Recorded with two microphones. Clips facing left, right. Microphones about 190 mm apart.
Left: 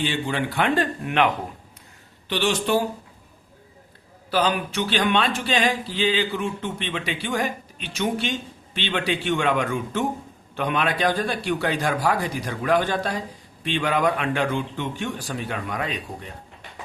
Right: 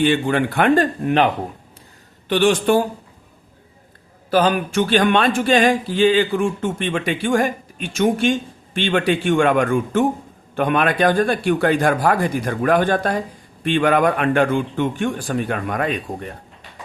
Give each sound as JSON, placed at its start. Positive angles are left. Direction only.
{"t": 0.0, "sound": "speech", "side_deg": -55}
{"t": 2.3, "sound": "speech", "side_deg": -50}
{"t": 4.3, "sound": "speech", "side_deg": -50}